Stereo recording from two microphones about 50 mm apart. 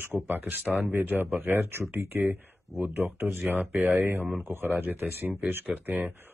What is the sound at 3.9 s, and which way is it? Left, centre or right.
Speech, right.